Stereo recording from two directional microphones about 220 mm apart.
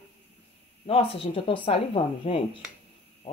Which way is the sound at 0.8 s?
25° left (ahead or behind).